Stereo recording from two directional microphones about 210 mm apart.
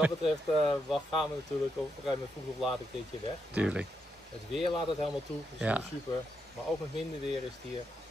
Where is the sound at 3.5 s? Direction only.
5° right (ahead or behind).